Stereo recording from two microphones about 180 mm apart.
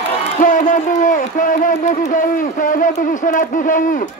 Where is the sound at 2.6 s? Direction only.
45° left (ahead or behind).